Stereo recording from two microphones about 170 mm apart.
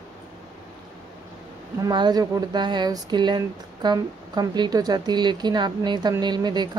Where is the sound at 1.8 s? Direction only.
25° right (ahead or behind).